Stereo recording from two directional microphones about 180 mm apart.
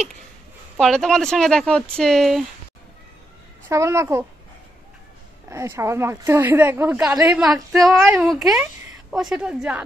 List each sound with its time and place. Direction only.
0.7 s speech: centre (ahead or behind)
3.6 s a woman's voice: 15° right (ahead or behind)
5.5 s a woman's voice: 15° right (ahead or behind)